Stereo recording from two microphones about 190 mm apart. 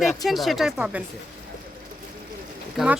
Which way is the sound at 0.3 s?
Centre (ahead or behind).